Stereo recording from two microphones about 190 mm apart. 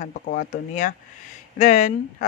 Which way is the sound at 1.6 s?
35° left (ahead or behind).